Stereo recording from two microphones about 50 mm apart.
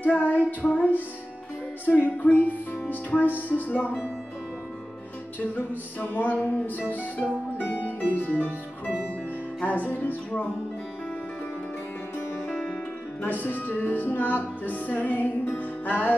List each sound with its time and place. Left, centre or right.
0.0 s music: left
5.9 s music: left
12.4 s music: left
13.2 s music: left